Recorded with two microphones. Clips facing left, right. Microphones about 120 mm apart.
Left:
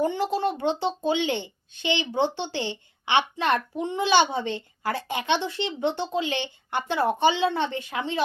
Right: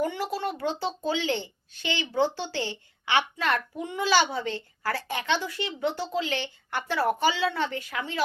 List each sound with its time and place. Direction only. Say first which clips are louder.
0.0 s a woman's voice: left 4 dB; 25° left (ahead or behind)